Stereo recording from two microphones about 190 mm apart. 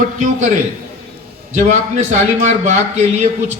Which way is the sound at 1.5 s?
40° right (ahead or behind).